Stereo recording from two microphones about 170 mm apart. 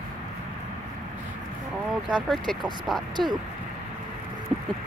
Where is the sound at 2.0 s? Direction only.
Centre (ahead or behind).